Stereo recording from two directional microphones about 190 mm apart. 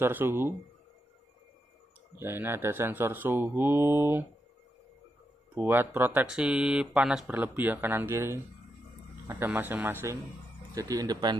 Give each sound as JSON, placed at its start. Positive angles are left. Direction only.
{"t": 0.0, "sound": "speech", "side_deg": -10}
{"t": 2.1, "sound": "speech", "side_deg": -10}
{"t": 5.5, "sound": "speech", "side_deg": -10}